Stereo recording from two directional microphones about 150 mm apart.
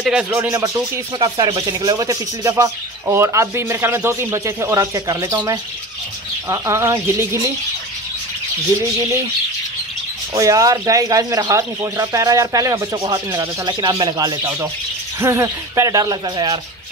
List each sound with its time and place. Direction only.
0.0 s speech: 5° right (ahead or behind)
0.5 s speech: 15° right (ahead or behind)
1.2 s speech: 30° right (ahead or behind)
10.3 s speech: 20° right (ahead or behind)